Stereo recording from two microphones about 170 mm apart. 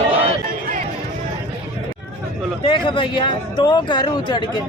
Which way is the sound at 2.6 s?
30° left (ahead or behind).